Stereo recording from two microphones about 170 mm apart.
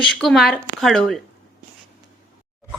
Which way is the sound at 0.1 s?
Centre (ahead or behind).